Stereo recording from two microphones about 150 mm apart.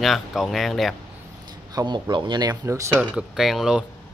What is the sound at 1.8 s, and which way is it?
Speech, 30° right (ahead or behind).